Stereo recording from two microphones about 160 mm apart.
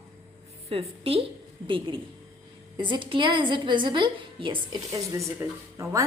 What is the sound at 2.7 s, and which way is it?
A woman's voice, 30° right (ahead or behind).